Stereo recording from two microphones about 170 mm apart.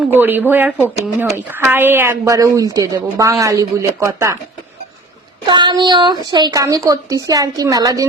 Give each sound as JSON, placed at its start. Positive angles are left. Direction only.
{"t": 0.2, "sound": "speech", "side_deg": -10}
{"t": 5.5, "sound": "speech", "side_deg": -25}